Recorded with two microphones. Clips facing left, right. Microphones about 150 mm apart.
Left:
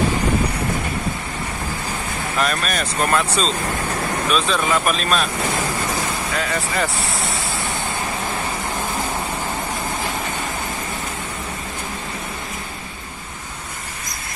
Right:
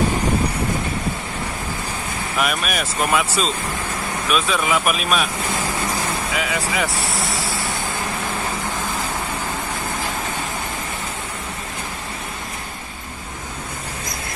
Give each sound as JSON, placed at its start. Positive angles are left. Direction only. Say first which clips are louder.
{"t": 2.3, "sound": "speech", "louder": "even", "side_deg": -10}
{"t": 6.3, "sound": "speech", "louder": "left 1 dB", "side_deg": -5}